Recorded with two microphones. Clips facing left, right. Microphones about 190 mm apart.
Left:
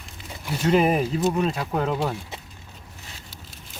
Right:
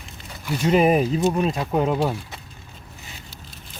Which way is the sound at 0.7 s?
15° right (ahead or behind).